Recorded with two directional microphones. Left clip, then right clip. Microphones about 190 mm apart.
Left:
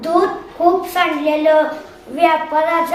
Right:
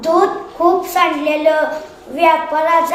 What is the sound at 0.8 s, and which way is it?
A woman's voice, 15° left (ahead or behind).